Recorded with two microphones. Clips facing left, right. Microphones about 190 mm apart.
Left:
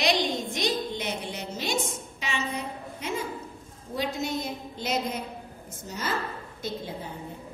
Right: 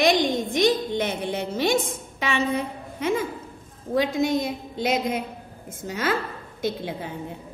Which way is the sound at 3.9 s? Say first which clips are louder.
Right 8 dB; 90° right.